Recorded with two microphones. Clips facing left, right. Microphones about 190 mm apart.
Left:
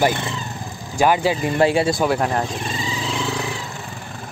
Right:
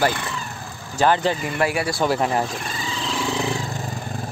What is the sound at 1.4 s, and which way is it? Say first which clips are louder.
Speech: left 5 dB; 25° left (ahead or behind).